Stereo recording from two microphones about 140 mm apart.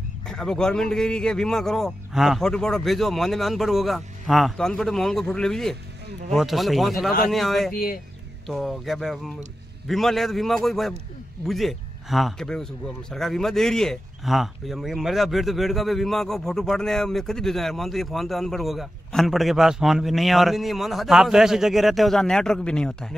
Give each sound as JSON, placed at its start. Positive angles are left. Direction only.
{"t": 0.3, "sound": "speech", "side_deg": 5}
{"t": 7.7, "sound": "speech", "side_deg": 90}
{"t": 8.5, "sound": "speech", "side_deg": 0}